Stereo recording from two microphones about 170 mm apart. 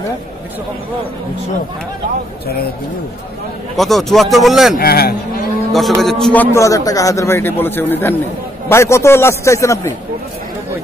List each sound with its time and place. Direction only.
3.7 s speech: centre (ahead or behind)
4.7 s speech: 65° left (ahead or behind)
5.7 s a man's voice: centre (ahead or behind); by 9.9 s 15° left (ahead or behind)